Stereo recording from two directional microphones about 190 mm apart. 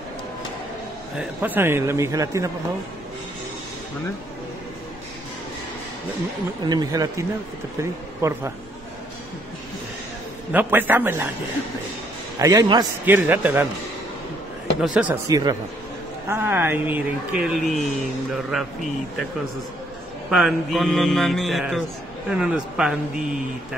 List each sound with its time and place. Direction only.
1.1 s speech: 10° right (ahead or behind)
6.7 s speech: 20° right (ahead or behind)
10.5 s speech: 10° right (ahead or behind)
12.4 s speech: 15° right (ahead or behind)
14.8 s speech: 5° right (ahead or behind)
15.2 s a man's voice: 20° right (ahead or behind); by 19.2 s centre (ahead or behind)
20.2 s a man's voice: centre (ahead or behind)